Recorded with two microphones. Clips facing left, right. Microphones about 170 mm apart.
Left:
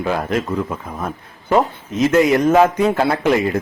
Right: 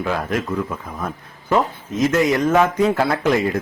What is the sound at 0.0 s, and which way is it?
Speech, 25° left (ahead or behind).